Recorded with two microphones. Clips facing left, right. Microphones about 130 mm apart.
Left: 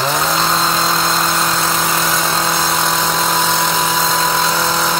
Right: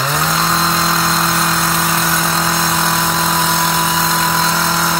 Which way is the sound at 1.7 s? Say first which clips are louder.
Even; centre (ahead or behind).